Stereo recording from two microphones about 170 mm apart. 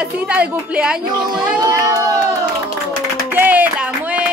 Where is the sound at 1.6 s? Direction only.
20° right (ahead or behind).